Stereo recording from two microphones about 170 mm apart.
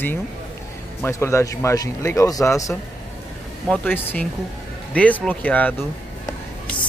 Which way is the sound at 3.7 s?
10° left (ahead or behind).